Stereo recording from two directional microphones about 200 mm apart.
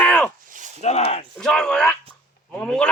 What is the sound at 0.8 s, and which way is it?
Speech, 35° left (ahead or behind).